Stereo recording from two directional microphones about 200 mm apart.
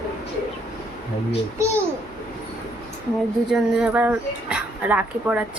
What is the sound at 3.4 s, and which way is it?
Speech, 5° right (ahead or behind).